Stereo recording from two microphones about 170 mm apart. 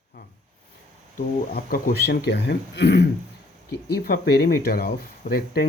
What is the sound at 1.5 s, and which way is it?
Speech, 65° left (ahead or behind).